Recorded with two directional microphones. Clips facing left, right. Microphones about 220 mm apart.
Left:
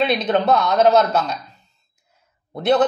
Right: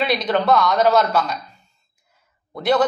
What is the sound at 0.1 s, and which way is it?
Speech, 20° left (ahead or behind).